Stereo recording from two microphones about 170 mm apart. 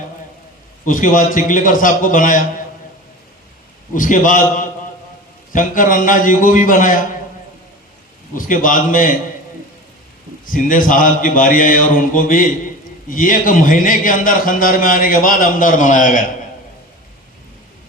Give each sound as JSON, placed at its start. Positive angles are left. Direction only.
{"t": 0.9, "sound": "a man's voice", "side_deg": 50}
{"t": 3.9, "sound": "a man's voice", "side_deg": 50}
{"t": 8.4, "sound": "a man's voice", "side_deg": 55}
{"t": 10.4, "sound": "a man's voice", "side_deg": 55}